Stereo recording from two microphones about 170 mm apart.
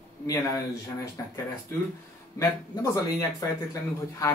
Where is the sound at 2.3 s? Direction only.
20° left (ahead or behind).